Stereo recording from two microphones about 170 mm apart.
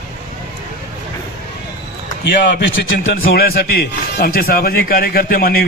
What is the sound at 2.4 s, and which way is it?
Speech, 90° left.